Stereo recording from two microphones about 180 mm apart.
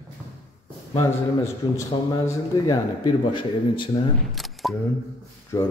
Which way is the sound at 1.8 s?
20° left (ahead or behind).